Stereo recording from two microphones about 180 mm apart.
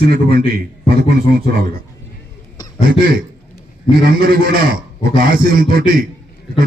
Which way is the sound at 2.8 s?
55° right (ahead or behind).